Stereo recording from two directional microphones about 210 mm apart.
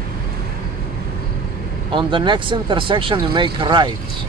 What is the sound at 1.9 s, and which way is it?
Speech, 20° right (ahead or behind).